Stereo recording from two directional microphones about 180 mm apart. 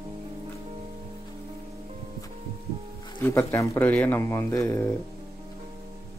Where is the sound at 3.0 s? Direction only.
15° left (ahead or behind).